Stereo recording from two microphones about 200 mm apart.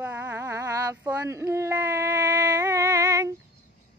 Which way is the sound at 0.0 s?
10° right (ahead or behind).